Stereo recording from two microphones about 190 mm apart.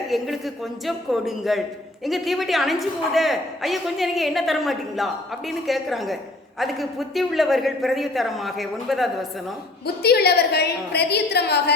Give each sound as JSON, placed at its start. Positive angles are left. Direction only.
{"t": 0.1, "sound": "a woman's voice", "side_deg": 0}
{"t": 9.8, "sound": "a woman's voice", "side_deg": 55}